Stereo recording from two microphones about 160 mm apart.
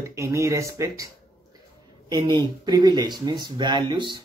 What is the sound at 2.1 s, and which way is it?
Speech, 25° right (ahead or behind).